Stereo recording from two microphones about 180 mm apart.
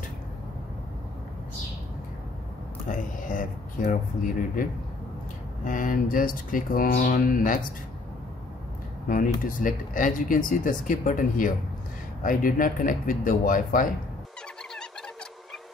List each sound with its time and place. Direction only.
3.2 s a sound: 50° left (ahead or behind)
5.7 s speech: 50° left (ahead or behind)
9.1 s speech: 50° left (ahead or behind)